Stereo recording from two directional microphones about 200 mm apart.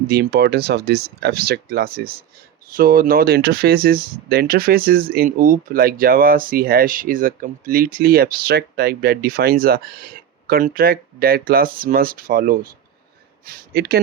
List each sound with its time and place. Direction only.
0.1 s speech: 55° right (ahead or behind)